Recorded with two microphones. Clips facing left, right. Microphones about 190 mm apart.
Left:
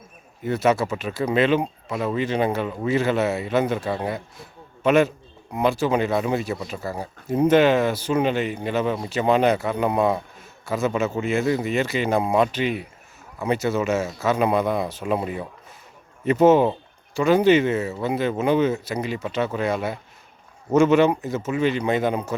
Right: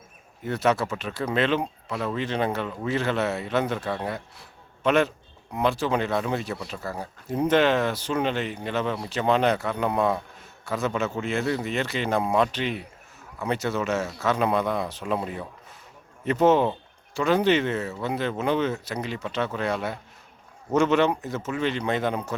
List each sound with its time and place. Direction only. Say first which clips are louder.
0.4 s speech: left 3 dB; 5° left (ahead or behind)